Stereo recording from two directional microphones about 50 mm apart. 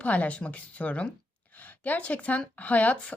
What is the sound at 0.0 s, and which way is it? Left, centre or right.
A woman's voice, left.